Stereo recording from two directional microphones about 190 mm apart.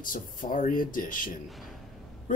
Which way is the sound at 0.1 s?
45° left (ahead or behind).